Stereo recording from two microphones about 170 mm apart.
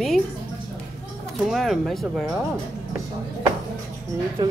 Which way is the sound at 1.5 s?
Centre (ahead or behind).